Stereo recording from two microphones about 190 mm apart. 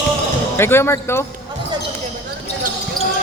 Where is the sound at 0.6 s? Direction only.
10° left (ahead or behind).